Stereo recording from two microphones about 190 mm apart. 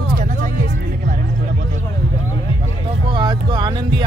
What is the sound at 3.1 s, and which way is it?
Speech, 25° right (ahead or behind).